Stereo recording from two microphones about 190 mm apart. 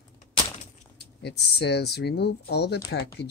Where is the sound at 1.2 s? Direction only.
60° left (ahead or behind).